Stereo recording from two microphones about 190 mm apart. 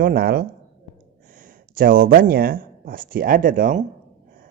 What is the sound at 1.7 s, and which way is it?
Speech, 50° right (ahead or behind).